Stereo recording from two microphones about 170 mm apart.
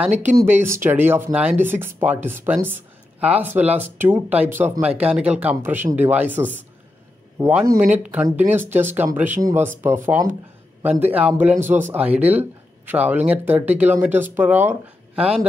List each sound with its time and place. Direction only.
0.5 s speech: 15° right (ahead or behind)